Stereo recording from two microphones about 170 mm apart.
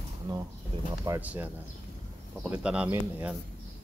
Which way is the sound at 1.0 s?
10° right (ahead or behind).